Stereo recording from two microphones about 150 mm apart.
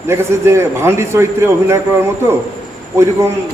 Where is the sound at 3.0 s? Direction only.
20° right (ahead or behind).